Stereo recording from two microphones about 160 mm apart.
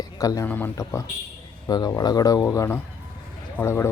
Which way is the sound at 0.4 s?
10° left (ahead or behind).